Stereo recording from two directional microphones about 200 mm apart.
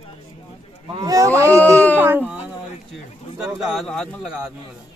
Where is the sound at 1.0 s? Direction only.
15° right (ahead or behind).